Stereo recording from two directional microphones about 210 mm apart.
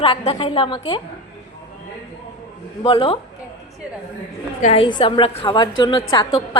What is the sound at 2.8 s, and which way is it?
Speech, 25° left (ahead or behind).